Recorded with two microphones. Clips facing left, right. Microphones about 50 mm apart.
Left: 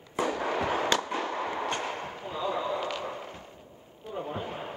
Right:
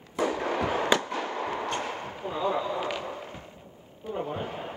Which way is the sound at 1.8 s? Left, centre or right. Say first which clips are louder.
Right 1 dB; centre.